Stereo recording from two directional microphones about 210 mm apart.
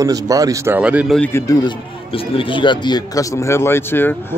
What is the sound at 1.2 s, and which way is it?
Speech, 10° left (ahead or behind).